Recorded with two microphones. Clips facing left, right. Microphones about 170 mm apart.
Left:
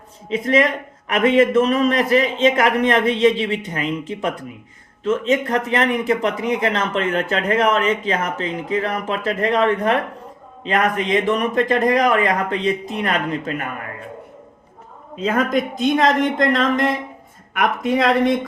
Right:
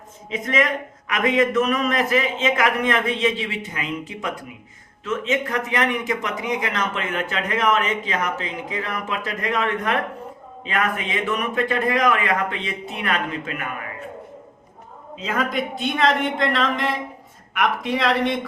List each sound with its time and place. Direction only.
0.3 s speech: 35° left (ahead or behind)
15.2 s speech: 50° left (ahead or behind)